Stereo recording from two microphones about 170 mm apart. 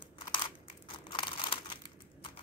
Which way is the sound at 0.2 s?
25° left (ahead or behind).